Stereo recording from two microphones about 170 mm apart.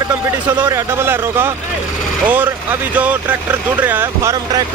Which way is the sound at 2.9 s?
10° right (ahead or behind).